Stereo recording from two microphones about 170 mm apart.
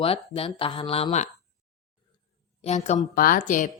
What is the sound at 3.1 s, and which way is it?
Speech, 55° left (ahead or behind).